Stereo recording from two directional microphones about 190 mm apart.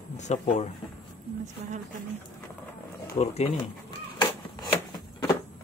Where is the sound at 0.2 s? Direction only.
35° left (ahead or behind).